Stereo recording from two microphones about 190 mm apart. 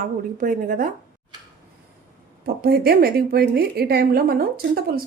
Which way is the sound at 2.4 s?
55° right (ahead or behind).